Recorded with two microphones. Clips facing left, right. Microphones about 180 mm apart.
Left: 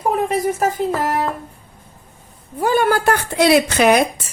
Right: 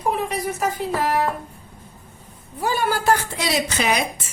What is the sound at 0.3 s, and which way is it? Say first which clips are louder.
Speech: left 6 dB; 45° left (ahead or behind).